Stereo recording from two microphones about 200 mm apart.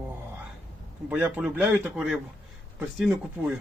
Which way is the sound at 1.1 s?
5° right (ahead or behind).